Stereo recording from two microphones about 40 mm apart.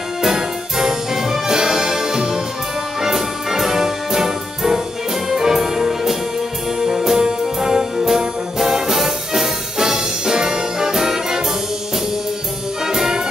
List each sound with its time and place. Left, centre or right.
0.2 s music: centre
6.8 s brass instrument: centre
12.8 s brass instrument: centre